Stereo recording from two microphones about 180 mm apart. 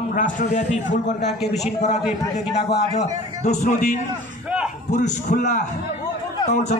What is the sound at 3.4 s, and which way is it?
Speech, 40° left (ahead or behind).